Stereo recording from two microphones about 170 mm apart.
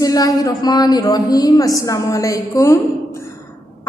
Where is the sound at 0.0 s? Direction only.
20° left (ahead or behind).